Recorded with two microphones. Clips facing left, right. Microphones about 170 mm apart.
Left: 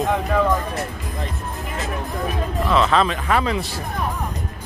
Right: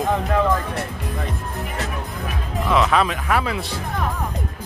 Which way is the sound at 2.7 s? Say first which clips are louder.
Even; 10° right (ahead or behind).